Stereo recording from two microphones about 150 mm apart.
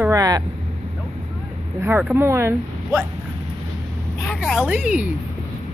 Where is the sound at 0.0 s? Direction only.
20° right (ahead or behind).